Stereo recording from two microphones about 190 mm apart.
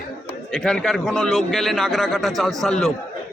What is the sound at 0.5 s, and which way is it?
A man's voice, 5° left (ahead or behind).